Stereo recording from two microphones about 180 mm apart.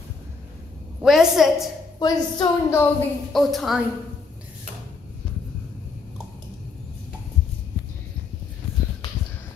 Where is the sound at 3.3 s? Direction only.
Centre (ahead or behind).